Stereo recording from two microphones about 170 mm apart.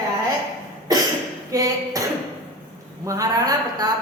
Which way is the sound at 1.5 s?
20° right (ahead or behind).